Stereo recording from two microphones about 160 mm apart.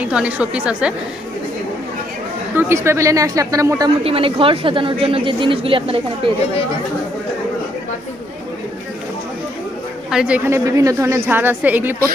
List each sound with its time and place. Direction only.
0.0 s a woman's voice: 5° right (ahead or behind)
2.5 s speech: 15° right (ahead or behind)
4.0 s a woman's voice: 35° right (ahead or behind)
10.1 s a woman's voice: 5° right (ahead or behind)